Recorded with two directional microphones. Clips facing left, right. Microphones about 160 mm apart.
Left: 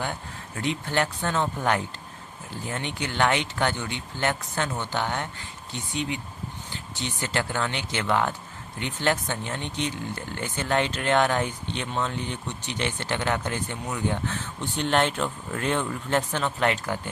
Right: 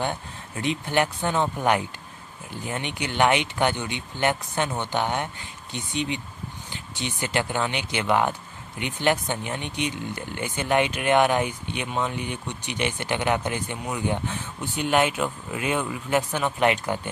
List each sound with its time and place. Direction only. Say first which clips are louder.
0.0 s speech: right 3 dB; 20° right (ahead or behind)